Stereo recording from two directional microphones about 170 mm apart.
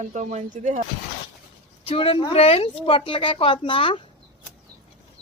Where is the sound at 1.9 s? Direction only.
30° left (ahead or behind).